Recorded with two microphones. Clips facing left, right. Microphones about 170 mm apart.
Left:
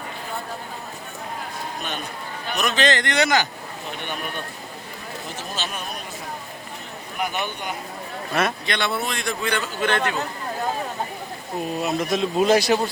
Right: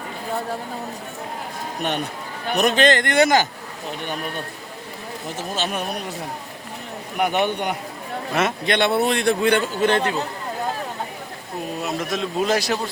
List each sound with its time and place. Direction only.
2.5 s a man's voice: 55° right (ahead or behind)
4.0 s speech: 35° right (ahead or behind)
5.4 s a man's voice: 55° right (ahead or behind)
7.2 s a man's voice: 65° right (ahead or behind)
8.3 s a man's voice: 20° right (ahead or behind)
8.6 s a man's voice: 55° right (ahead or behind)
9.8 s speech: 30° right (ahead or behind)
11.8 s a man's voice: centre (ahead or behind)